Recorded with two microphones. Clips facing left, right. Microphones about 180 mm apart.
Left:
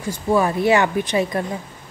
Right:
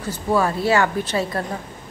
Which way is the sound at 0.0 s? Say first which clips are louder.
Left 2 dB; 15° left (ahead or behind).